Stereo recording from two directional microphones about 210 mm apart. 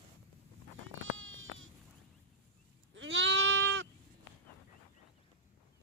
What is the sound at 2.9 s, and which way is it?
Goat, 60° right (ahead or behind).